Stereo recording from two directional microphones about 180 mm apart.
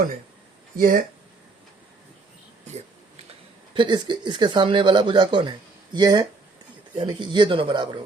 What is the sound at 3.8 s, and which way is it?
Speech, 25° right (ahead or behind).